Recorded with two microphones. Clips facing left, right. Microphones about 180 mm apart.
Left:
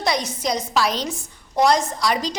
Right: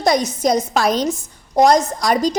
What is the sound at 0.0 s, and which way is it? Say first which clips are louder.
A woman's voice: right 7 dB; 45° right (ahead or behind).